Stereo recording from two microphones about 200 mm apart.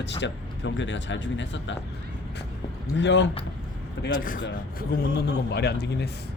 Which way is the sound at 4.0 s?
45° left (ahead or behind).